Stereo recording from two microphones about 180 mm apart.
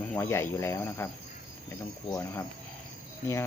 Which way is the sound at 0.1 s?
15° left (ahead or behind).